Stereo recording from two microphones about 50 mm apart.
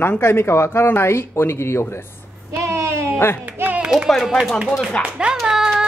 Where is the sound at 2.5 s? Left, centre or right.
Right.